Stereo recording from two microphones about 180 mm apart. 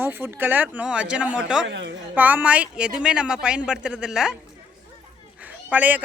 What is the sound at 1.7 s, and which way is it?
Speech, 75° right (ahead or behind).